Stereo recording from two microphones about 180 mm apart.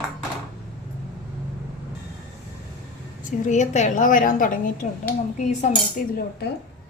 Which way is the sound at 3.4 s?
40° left (ahead or behind).